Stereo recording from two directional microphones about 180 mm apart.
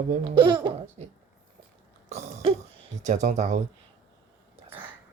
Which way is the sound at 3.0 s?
40° right (ahead or behind).